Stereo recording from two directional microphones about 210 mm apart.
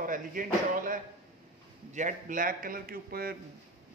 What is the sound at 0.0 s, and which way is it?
A man's voice, 40° right (ahead or behind).